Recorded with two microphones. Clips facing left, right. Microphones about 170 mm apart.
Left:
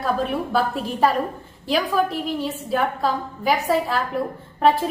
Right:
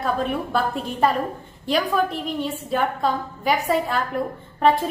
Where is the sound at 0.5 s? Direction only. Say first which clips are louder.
Left 1 dB; centre (ahead or behind).